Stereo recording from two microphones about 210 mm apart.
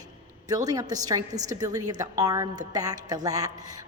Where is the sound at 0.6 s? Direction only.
15° right (ahead or behind).